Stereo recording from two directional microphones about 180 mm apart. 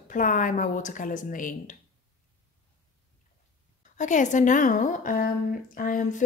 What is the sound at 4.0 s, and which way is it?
A woman's voice, 45° left (ahead or behind).